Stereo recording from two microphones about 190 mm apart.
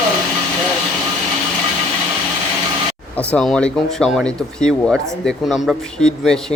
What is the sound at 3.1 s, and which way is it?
Speech, 5° left (ahead or behind).